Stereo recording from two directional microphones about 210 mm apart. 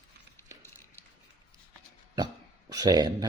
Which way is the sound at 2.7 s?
20° right (ahead or behind).